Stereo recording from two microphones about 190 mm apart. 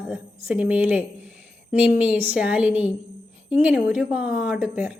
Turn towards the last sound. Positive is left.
turn(degrees=-5)  # may be behind; listen again after turning